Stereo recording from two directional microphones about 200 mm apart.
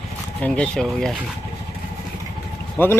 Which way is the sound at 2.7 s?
10° left (ahead or behind).